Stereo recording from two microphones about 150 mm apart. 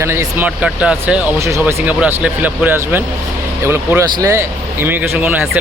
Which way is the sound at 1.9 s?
10° right (ahead or behind).